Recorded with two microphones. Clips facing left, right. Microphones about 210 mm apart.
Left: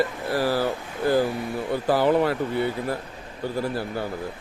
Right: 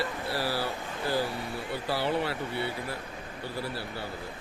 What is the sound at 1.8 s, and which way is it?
Speech, 50° left (ahead or behind).